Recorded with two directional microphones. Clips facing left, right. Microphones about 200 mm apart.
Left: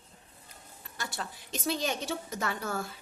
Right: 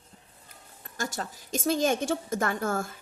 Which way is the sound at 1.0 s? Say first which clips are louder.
Right 5 dB; 45° right (ahead or behind).